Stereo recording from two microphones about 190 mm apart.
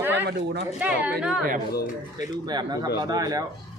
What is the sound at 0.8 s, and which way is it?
Speech, 5° right (ahead or behind).